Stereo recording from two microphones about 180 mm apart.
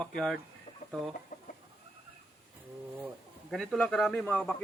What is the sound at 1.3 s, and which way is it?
Chicken, 45° left (ahead or behind).